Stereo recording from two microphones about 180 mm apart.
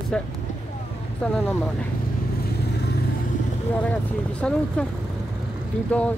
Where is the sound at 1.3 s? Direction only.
5° left (ahead or behind).